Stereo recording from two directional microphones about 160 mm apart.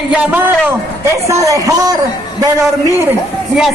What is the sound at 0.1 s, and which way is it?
A man's voice, 10° right (ahead or behind).